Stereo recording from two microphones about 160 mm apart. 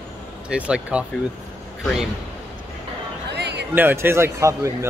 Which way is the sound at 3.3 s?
90° right.